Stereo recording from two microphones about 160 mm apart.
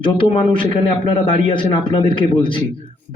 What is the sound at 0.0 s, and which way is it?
A man's voice, 30° left (ahead or behind).